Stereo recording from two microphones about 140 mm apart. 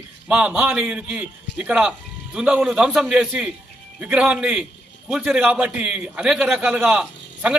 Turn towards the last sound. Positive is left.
turn(degrees=-5)  # may be behind; listen again after turning